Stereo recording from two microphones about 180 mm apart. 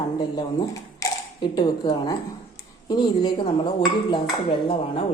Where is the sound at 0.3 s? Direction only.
20° left (ahead or behind).